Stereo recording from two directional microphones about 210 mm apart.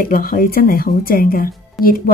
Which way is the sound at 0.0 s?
45° left (ahead or behind).